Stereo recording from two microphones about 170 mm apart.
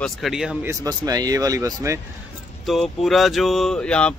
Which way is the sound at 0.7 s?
20° right (ahead or behind).